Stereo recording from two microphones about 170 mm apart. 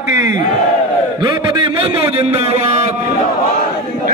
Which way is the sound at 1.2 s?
30° right (ahead or behind).